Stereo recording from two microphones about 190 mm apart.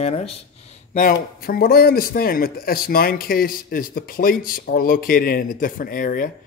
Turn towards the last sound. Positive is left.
turn(degrees=45)  # may be behind; listen again after turning